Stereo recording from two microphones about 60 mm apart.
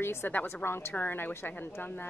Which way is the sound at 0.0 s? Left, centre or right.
Left.